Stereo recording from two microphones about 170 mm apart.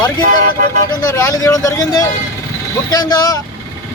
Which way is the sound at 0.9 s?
20° left (ahead or behind).